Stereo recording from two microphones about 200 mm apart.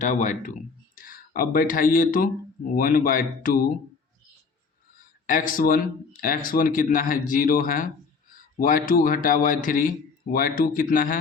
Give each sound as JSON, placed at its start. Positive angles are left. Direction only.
{"t": 0.0, "sound": "speech", "side_deg": 40}
{"t": 5.2, "sound": "speech", "side_deg": 45}